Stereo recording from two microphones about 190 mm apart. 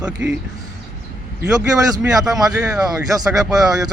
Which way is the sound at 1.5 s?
20° right (ahead or behind).